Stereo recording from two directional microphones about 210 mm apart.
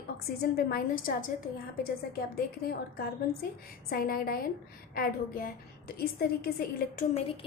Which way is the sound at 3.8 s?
45° left (ahead or behind).